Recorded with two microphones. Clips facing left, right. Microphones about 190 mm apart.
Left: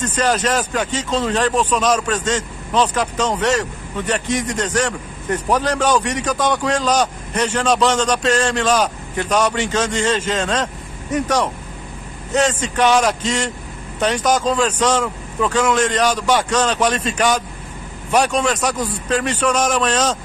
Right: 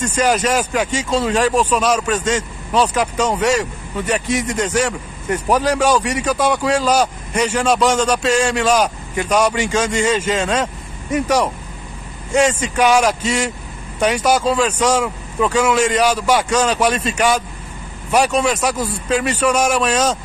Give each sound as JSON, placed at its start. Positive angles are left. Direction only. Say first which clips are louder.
{"t": 0.0, "sound": "speech", "louder": "right 2 dB", "side_deg": -10}